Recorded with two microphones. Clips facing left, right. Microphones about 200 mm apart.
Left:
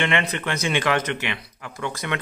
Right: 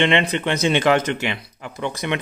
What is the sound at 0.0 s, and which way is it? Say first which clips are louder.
Speech: right 5 dB; 20° right (ahead or behind).